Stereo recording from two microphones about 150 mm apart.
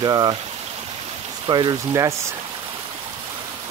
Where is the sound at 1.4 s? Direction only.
30° right (ahead or behind).